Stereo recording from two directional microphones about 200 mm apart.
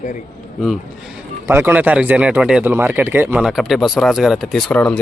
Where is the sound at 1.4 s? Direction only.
10° right (ahead or behind); by 5.0 s 5° left (ahead or behind).